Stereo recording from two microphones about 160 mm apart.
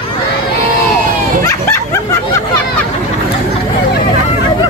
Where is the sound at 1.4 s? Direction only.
15° left (ahead or behind).